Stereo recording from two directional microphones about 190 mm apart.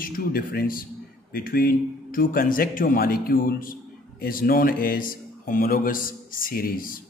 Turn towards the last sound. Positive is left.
turn(degrees=50)  # may be behind; listen again after turning